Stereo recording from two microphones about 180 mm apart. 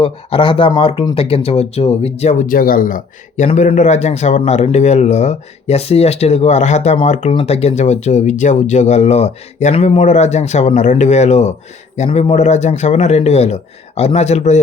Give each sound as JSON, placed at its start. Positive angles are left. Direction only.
{"t": 0.0, "sound": "speech", "side_deg": 30}